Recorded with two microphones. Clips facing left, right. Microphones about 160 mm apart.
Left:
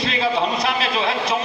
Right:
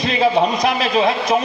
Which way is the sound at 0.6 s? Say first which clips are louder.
Right 5 dB; 40° right (ahead or behind).